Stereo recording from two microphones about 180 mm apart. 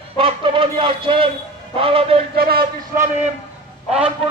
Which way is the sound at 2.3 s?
60° right (ahead or behind).